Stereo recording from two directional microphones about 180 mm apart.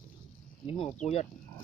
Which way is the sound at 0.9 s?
35° left (ahead or behind).